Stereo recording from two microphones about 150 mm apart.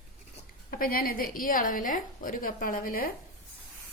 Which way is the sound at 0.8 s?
75° left (ahead or behind).